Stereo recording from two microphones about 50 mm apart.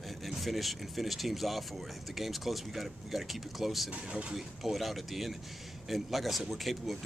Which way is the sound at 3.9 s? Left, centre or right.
Right.